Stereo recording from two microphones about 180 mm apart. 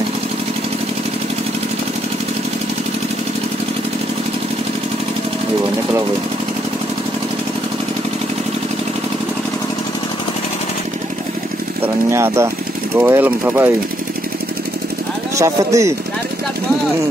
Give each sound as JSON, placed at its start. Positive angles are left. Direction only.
{"t": 11.8, "sound": "a sound", "side_deg": -15}
{"t": 12.9, "sound": "speech", "side_deg": -10}
{"t": 15.3, "sound": "speech", "side_deg": -15}